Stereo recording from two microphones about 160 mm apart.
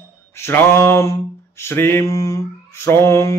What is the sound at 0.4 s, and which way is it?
Mantra, 15° left (ahead or behind).